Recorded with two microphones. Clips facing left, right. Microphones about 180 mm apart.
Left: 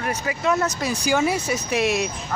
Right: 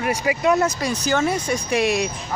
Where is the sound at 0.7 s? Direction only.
5° left (ahead or behind).